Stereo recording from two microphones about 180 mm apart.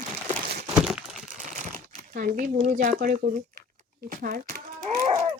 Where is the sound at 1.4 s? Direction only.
45° right (ahead or behind).